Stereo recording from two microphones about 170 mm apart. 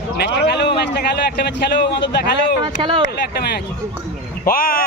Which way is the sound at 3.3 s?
70° left (ahead or behind).